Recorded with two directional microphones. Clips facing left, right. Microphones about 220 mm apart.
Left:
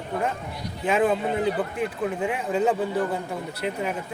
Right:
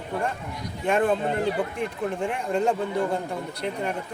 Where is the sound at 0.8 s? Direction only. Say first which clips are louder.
Even; 5° left (ahead or behind).